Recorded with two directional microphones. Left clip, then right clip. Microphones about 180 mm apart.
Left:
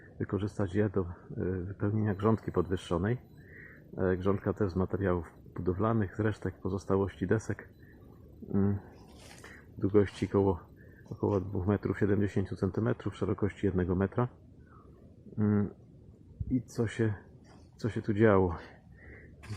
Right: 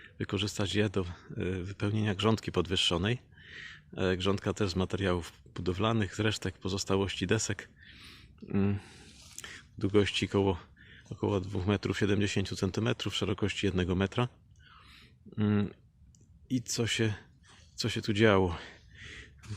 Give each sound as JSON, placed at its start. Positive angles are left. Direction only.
{"t": 0.2, "sound": "speech", "side_deg": -20}
{"t": 9.8, "sound": "speech", "side_deg": -20}
{"t": 15.4, "sound": "speech", "side_deg": -25}